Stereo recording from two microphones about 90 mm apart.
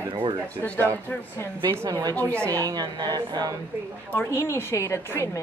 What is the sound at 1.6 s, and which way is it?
Speech, 55° right (ahead or behind).